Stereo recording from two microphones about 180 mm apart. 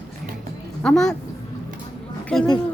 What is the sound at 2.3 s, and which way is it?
Speech, centre (ahead or behind).